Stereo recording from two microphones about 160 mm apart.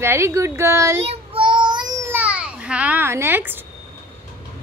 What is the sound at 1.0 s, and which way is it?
Child singing, 35° right (ahead or behind).